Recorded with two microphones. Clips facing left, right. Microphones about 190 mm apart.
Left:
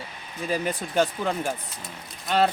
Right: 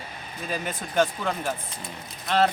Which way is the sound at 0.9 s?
15° left (ahead or behind).